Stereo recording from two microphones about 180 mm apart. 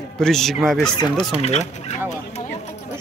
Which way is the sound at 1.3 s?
35° left (ahead or behind).